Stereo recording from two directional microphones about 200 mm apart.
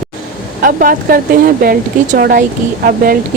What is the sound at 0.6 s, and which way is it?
Speech, 45° right (ahead or behind).